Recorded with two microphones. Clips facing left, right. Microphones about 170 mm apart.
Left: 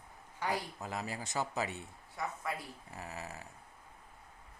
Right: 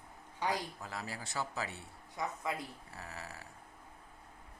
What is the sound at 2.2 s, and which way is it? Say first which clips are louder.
Speech: right 1 dB; 15° right (ahead or behind).